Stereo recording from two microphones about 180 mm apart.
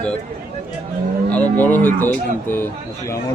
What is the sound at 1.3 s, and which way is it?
Speech, 10° left (ahead or behind).